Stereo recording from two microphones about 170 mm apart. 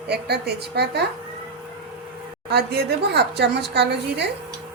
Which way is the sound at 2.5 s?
70° right (ahead or behind).